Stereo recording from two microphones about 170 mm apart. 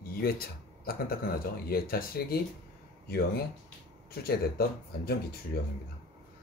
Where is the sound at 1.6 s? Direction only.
60° left (ahead or behind).